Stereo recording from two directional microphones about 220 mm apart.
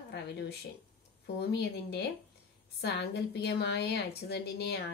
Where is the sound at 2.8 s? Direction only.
50° left (ahead or behind).